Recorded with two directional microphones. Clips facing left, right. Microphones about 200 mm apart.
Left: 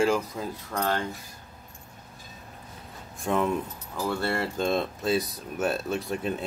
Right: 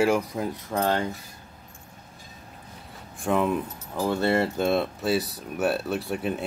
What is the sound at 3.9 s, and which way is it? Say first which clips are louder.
Speech: right 5 dB; 20° right (ahead or behind).